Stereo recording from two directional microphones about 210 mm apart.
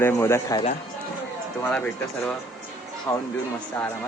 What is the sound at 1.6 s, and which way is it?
A man's voice, 5° left (ahead or behind).